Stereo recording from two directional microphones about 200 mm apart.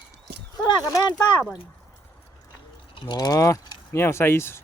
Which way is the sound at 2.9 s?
25° left (ahead or behind).